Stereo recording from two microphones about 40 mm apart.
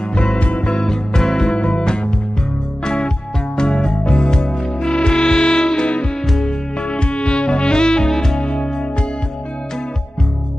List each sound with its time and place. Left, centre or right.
0.1 s music: left
0.8 s music: centre
8.4 s music: left